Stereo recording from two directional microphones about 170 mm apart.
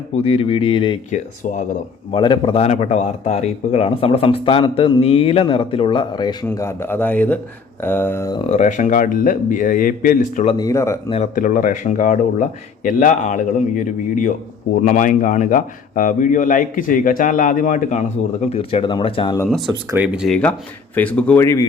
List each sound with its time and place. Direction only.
0.2 s speech: 35° left (ahead or behind)
1.1 s a man's voice: 45° left (ahead or behind)
2.1 s speech: 30° left (ahead or behind)
6.4 s a man's voice: 15° left (ahead or behind)
8.4 s a man's voice: 45° left (ahead or behind)
10.6 s a man's voice: 20° left (ahead or behind)
11.3 s a man's voice: 55° left (ahead or behind); by 19.4 s 30° left (ahead or behind)
19.5 s a man's voice: centre (ahead or behind); by 21.7 s 15° left (ahead or behind)